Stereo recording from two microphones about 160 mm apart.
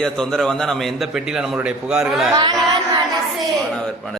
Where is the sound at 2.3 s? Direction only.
25° right (ahead or behind).